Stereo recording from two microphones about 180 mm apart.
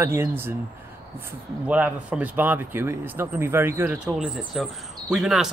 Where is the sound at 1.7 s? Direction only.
10° right (ahead or behind).